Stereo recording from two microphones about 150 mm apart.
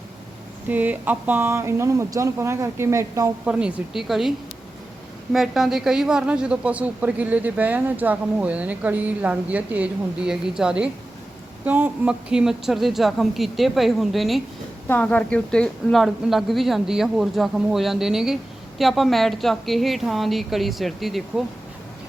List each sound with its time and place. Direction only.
0.7 s a woman's voice: 10° right (ahead or behind)
5.3 s a woman's voice: centre (ahead or behind)
14.8 s speech: 10° left (ahead or behind)